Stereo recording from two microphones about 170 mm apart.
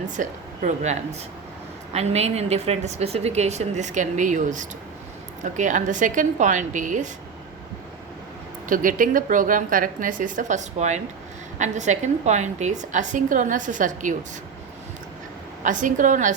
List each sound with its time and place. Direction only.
0.2 s a woman's voice: 45° right (ahead or behind)
8.7 s a woman's voice: 50° right (ahead or behind)
15.6 s a woman's voice: 50° right (ahead or behind)